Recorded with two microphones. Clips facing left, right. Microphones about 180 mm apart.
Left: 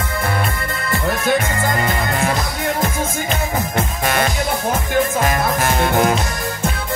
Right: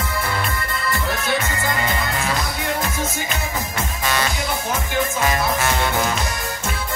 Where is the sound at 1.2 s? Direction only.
55° left (ahead or behind).